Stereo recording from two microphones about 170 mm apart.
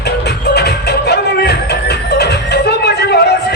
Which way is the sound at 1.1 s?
75° left (ahead or behind).